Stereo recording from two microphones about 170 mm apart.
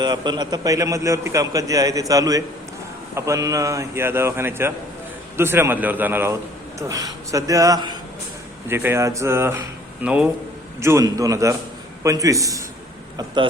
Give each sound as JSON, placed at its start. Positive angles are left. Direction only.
{"t": 0.0, "sound": "a man's voice", "side_deg": -25}
{"t": 10.8, "sound": "a man's voice", "side_deg": -15}